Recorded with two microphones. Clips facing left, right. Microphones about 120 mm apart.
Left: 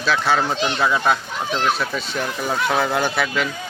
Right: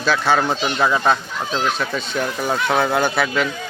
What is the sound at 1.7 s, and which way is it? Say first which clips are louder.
Speech: even; centre (ahead or behind).